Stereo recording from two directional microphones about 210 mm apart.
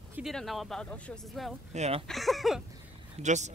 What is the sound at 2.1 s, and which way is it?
Speech, centre (ahead or behind).